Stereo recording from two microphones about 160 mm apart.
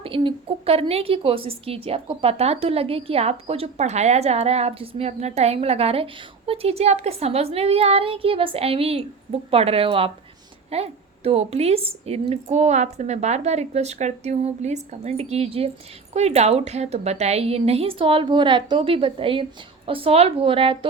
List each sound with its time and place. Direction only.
0.0 s a woman's voice: 35° right (ahead or behind)